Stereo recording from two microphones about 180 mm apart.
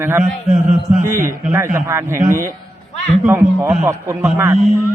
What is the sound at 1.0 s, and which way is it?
A man's voice, 15° right (ahead or behind).